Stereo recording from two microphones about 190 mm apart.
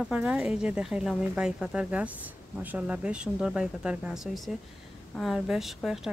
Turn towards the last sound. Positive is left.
turn(degrees=0)  # may be behind; listen again after turning